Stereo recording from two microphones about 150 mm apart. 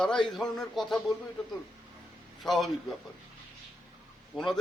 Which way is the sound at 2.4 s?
Centre (ahead or behind).